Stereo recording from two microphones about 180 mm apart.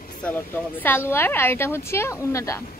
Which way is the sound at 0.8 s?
10° left (ahead or behind).